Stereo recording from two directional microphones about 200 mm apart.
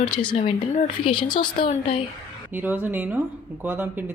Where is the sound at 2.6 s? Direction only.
10° right (ahead or behind).